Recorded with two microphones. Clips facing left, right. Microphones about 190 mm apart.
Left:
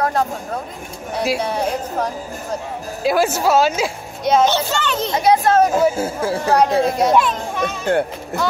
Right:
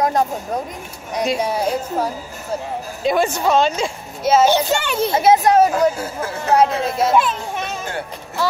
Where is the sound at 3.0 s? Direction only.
5° left (ahead or behind); by 5.1 s 10° right (ahead or behind).